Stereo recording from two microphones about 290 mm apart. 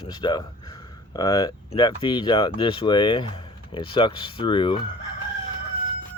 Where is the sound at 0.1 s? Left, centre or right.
Centre.